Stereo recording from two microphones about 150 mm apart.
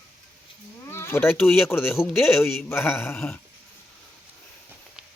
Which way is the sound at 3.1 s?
5° left (ahead or behind).